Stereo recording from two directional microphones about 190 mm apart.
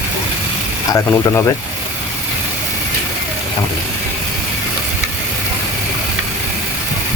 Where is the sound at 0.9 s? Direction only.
15° left (ahead or behind).